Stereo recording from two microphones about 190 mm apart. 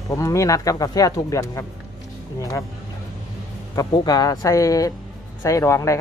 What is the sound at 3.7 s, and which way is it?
Speech, 20° left (ahead or behind).